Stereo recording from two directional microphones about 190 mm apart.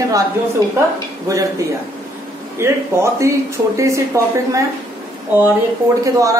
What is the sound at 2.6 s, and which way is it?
Speech, 15° right (ahead or behind).